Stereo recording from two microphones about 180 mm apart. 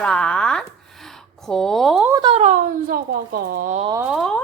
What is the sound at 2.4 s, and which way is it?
Speech, 45° right (ahead or behind).